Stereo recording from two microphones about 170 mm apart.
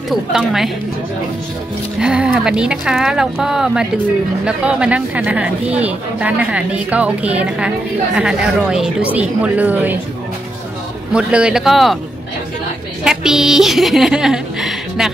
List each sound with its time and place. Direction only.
0.1 s speech: centre (ahead or behind)
2.0 s speech: 5° right (ahead or behind)
11.1 s speech: 5° right (ahead or behind)
13.0 s speech: 5° right (ahead or behind)